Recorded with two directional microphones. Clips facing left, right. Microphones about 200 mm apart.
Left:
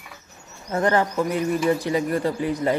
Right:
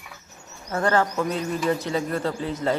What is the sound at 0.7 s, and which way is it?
Speech, 20° left (ahead or behind).